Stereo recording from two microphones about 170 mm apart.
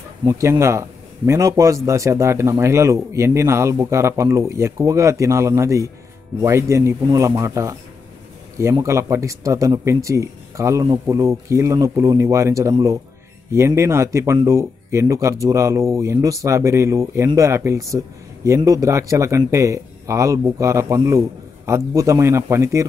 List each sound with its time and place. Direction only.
0.2 s a man's voice: 20° right (ahead or behind)
8.8 s speech: 15° right (ahead or behind)